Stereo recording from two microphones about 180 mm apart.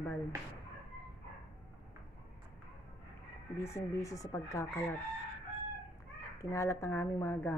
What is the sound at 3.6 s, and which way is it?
Speech, 15° left (ahead or behind).